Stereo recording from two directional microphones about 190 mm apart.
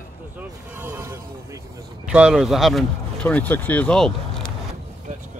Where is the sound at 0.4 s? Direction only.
10° right (ahead or behind).